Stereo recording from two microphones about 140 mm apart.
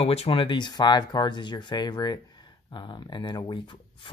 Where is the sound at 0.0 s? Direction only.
45° left (ahead or behind).